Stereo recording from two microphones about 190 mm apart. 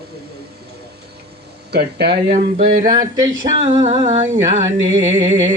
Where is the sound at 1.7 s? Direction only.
60° right (ahead or behind).